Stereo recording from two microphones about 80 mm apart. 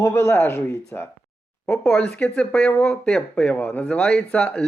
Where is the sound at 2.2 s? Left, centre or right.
Centre.